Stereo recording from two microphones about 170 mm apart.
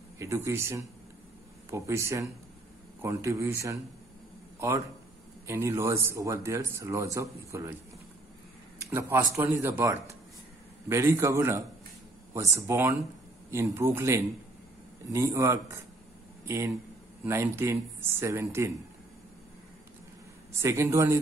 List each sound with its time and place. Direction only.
0.2 s speech: 15° right (ahead or behind)
8.7 s speech: 15° right (ahead or behind)
20.6 s speech: 15° right (ahead or behind)